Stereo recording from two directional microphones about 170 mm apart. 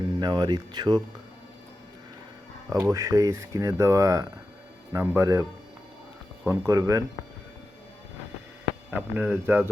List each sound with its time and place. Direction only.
0.2 s speech: 25° right (ahead or behind)
2.6 s speech: 20° right (ahead or behind)
9.0 s speech: 10° right (ahead or behind)